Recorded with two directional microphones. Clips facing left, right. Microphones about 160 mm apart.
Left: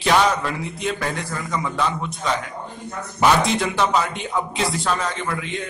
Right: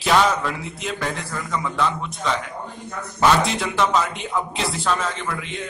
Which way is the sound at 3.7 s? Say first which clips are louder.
Even; centre (ahead or behind).